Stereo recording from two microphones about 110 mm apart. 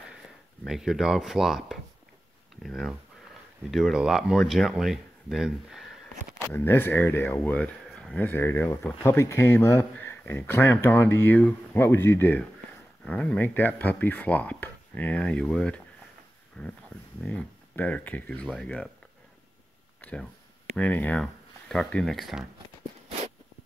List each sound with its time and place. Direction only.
0.7 s speech: 5° right (ahead or behind)
6.5 s speech: 20° left (ahead or behind)
7.9 s a sound: 5° left (ahead or behind)
8.2 s speech: 20° left (ahead or behind)
20.0 s speech: 10° left (ahead or behind)